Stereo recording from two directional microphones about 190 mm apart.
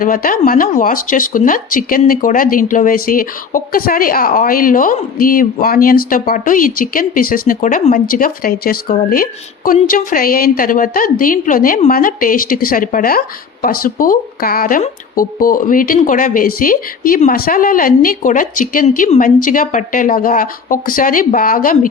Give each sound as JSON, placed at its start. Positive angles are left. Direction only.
{"t": 0.0, "sound": "speech", "side_deg": 45}